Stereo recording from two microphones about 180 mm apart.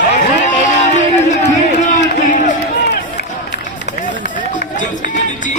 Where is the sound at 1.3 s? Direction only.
45° left (ahead or behind).